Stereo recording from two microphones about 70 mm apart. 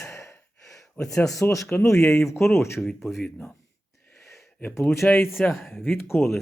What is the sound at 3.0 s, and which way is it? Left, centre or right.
Speech, centre.